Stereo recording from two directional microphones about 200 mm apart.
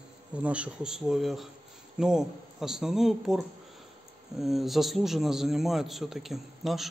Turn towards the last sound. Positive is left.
turn(degrees=0)  # may be behind; listen again after turning